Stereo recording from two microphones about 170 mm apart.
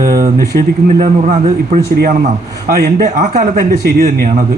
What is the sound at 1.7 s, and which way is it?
Speech, 65° right (ahead or behind).